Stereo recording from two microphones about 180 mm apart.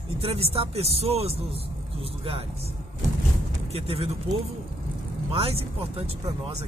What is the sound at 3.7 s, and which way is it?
Speech, 35° right (ahead or behind).